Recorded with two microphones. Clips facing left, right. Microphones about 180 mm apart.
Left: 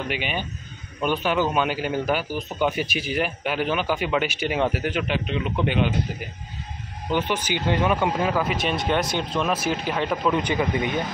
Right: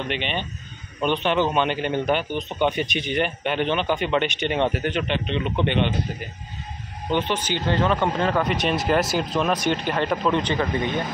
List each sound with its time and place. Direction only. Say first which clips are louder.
0.1 s a man's voice: right 1 dB; 5° left (ahead or behind)
7.1 s a man's voice: right 1 dB; 10° left (ahead or behind)